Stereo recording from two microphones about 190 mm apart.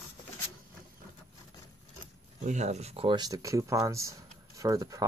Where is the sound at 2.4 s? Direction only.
40° right (ahead or behind).